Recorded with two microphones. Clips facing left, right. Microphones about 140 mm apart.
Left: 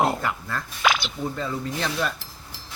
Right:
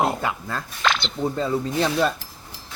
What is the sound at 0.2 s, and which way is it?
Speech, 20° right (ahead or behind).